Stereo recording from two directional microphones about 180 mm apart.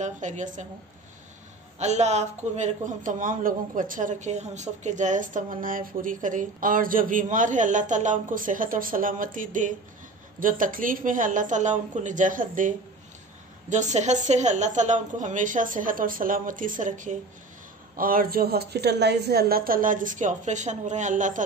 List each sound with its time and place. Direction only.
0.0 s a man's voice: 45° right (ahead or behind)
1.8 s a man's voice: 40° right (ahead or behind)